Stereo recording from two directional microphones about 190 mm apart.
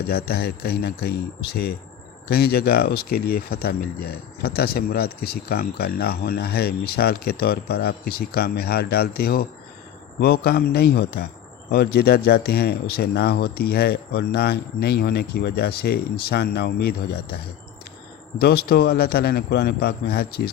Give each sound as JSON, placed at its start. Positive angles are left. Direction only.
{"t": 0.0, "sound": "speech", "side_deg": 55}